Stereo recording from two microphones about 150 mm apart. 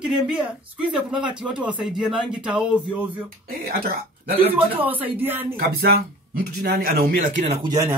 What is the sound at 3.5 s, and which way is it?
Speech, 80° right.